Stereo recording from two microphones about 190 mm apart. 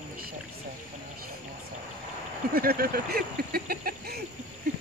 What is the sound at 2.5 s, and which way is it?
Speech, 50° right (ahead or behind).